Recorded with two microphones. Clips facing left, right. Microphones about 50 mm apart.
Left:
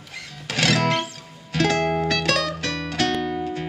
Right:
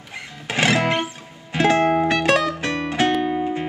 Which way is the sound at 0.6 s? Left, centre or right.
Right.